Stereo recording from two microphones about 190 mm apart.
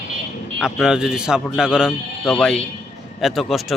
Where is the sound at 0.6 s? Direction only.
Centre (ahead or behind).